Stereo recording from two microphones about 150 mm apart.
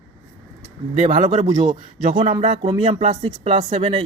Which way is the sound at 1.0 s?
50° right (ahead or behind).